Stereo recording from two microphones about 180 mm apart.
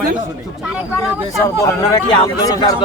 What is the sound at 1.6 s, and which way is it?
Speech, 20° left (ahead or behind).